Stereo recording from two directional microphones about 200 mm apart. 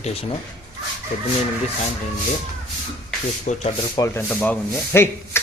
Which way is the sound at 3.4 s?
35° left (ahead or behind).